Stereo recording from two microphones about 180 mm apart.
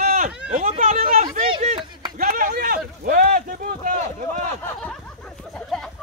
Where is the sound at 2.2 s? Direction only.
45° right (ahead or behind).